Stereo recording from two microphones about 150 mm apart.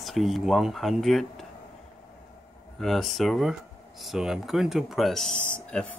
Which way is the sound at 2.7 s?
Centre (ahead or behind).